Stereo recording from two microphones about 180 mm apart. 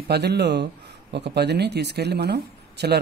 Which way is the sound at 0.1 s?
65° right (ahead or behind).